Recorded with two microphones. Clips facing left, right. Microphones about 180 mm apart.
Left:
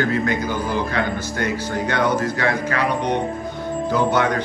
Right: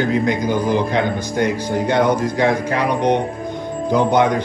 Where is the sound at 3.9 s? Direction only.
15° right (ahead or behind).